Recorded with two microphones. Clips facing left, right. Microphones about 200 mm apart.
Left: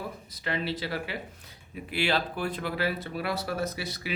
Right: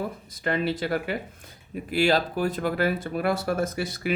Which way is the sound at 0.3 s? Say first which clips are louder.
Right 5 dB; 50° right (ahead or behind).